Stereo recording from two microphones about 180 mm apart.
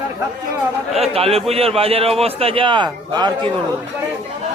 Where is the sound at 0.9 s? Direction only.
35° right (ahead or behind).